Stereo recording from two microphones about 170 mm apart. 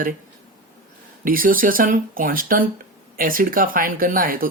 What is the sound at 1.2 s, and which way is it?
Speech, 55° right (ahead or behind).